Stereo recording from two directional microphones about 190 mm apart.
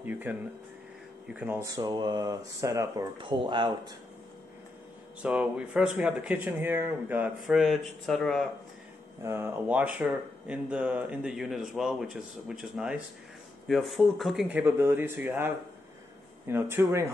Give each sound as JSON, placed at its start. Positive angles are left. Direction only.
{"t": 0.0, "sound": "speech", "side_deg": -10}
{"t": 5.2, "sound": "speech", "side_deg": -5}
{"t": 9.2, "sound": "speech", "side_deg": -10}